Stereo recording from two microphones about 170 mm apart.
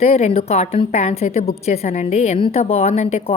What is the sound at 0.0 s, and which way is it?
A woman's voice, 40° left (ahead or behind).